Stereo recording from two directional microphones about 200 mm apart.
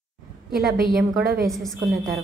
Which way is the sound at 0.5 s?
50° right (ahead or behind).